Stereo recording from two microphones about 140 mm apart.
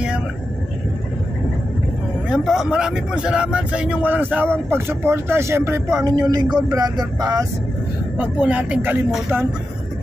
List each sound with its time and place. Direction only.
2.2 s speech: 5° right (ahead or behind); by 7.4 s 30° right (ahead or behind)
8.2 s speech: 10° right (ahead or behind)